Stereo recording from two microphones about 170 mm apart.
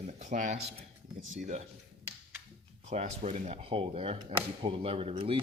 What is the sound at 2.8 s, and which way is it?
Speech, 40° right (ahead or behind).